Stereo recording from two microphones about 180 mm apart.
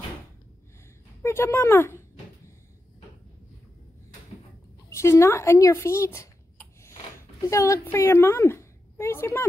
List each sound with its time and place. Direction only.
1.2 s a woman's voice: 15° left (ahead or behind)
4.8 s a woman's voice: 15° left (ahead or behind)
7.4 s a woman's voice: 15° left (ahead or behind)